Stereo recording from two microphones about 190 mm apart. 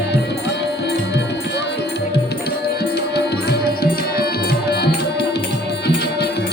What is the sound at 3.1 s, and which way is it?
Tabla, 55° left (ahead or behind).